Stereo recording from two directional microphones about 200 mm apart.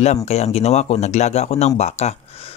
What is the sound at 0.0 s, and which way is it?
Speech, 35° left (ahead or behind).